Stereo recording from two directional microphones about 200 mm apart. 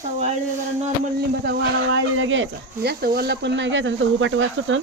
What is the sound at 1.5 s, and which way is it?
Speech, 65° right (ahead or behind).